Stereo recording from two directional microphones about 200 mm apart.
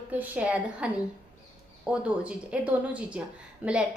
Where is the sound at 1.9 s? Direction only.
5° right (ahead or behind).